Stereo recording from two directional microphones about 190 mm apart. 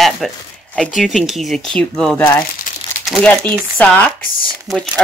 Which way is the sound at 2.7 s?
45° left (ahead or behind).